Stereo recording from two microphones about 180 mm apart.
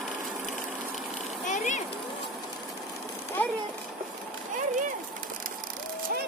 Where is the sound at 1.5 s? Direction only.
45° left (ahead or behind).